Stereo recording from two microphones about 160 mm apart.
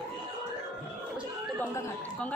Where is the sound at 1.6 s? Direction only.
15° left (ahead or behind).